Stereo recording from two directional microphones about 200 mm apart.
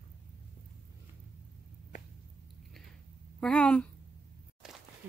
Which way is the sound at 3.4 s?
5° left (ahead or behind).